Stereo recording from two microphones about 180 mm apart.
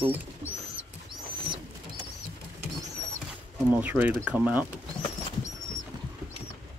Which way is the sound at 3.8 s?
10° right (ahead or behind).